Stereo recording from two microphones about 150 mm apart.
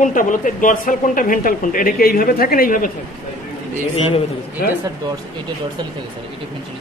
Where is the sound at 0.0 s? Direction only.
60° left (ahead or behind).